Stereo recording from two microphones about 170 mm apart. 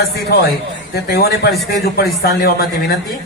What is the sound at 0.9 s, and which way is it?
A man's voice, 65° left (ahead or behind).